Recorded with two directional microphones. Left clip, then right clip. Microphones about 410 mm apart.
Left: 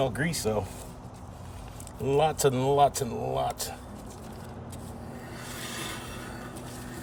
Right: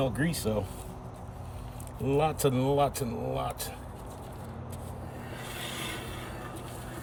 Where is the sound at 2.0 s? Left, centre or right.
Centre.